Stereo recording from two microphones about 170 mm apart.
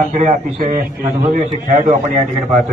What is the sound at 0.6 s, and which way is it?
A man's voice, 55° right (ahead or behind).